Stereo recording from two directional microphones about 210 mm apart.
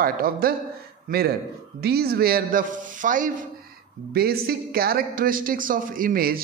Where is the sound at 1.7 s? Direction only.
50° right (ahead or behind).